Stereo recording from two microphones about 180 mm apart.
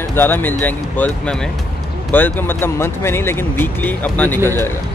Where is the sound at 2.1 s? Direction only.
10° left (ahead or behind).